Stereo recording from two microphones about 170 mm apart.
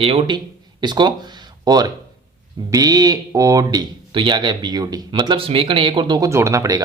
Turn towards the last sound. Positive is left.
turn(degrees=-20)  # may be behind; listen again after turning